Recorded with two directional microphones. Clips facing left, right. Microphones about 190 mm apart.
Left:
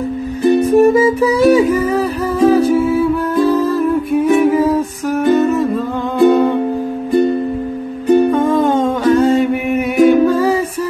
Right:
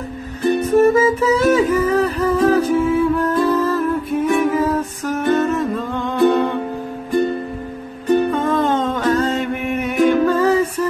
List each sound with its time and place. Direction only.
0.6 s music: 15° left (ahead or behind)
8.1 s music: 10° left (ahead or behind)